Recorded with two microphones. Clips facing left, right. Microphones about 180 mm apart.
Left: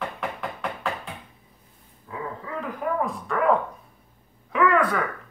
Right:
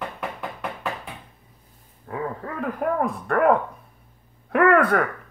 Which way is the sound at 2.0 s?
55° right (ahead or behind).